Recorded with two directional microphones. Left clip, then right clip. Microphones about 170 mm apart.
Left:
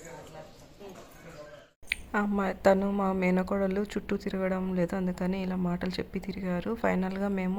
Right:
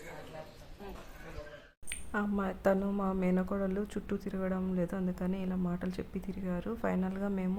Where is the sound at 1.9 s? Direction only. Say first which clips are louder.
Left 6 dB; 20° left (ahead or behind).